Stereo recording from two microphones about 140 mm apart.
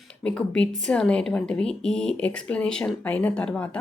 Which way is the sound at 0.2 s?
10° left (ahead or behind).